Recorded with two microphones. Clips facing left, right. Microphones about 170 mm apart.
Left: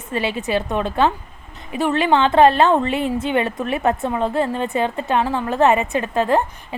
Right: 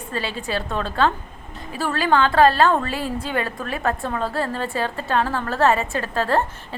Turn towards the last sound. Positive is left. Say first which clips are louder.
# left 3 dB
turn(degrees=15)  # may be behind; listen again after turning